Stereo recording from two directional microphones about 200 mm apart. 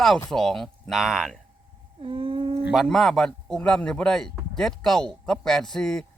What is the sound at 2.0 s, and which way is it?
Humming, 30° right (ahead or behind).